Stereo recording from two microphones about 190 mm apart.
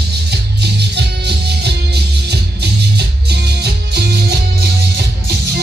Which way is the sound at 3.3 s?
60° right (ahead or behind).